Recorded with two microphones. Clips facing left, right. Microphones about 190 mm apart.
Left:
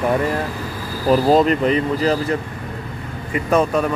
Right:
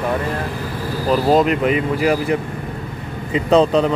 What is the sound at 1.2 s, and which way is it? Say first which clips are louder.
Speech: right 2 dB; centre (ahead or behind).